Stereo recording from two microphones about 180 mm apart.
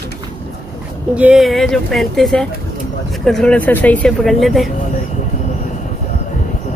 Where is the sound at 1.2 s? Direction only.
5° right (ahead or behind).